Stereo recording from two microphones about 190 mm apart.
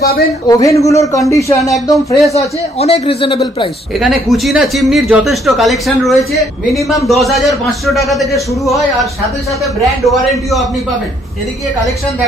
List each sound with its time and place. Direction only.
0.0 s speech: 55° left (ahead or behind)
0.5 s a man's voice: 15° left (ahead or behind)
2.3 s speech: 35° left (ahead or behind)
4.0 s speech: centre (ahead or behind)
10.0 s speech: centre (ahead or behind)